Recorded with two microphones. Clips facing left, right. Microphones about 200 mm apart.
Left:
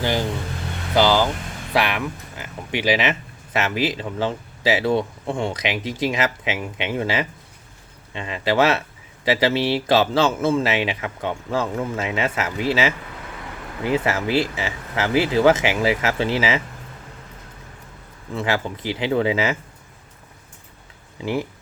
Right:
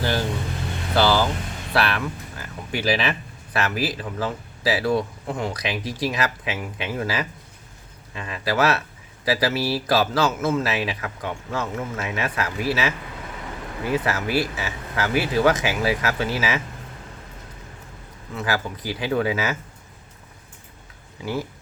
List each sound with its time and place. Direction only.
0.0 s speech: 15° left (ahead or behind)
18.3 s speech: 25° left (ahead or behind)